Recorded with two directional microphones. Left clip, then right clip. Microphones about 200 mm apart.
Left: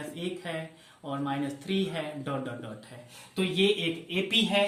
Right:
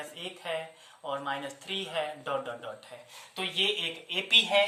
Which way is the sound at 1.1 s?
25° right (ahead or behind).